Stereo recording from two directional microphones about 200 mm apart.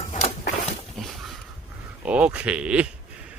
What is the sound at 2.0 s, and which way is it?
Speech, 5° right (ahead or behind).